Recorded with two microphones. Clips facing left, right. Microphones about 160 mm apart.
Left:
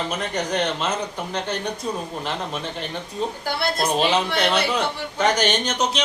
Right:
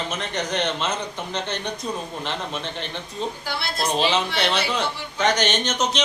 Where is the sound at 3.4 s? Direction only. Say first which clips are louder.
Left 4 dB; 50° left (ahead or behind).